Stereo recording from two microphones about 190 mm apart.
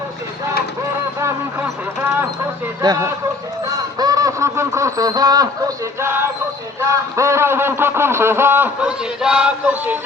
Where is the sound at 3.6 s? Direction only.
20° right (ahead or behind).